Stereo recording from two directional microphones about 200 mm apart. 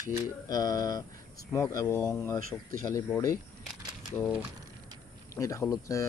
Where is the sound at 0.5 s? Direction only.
20° left (ahead or behind).